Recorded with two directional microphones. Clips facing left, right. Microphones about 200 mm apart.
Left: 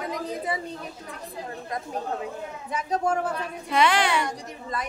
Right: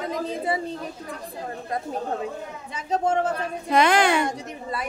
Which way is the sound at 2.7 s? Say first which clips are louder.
Right 2 dB; 25° right (ahead or behind).